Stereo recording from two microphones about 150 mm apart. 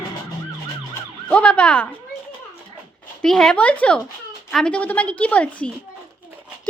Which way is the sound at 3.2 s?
5° left (ahead or behind).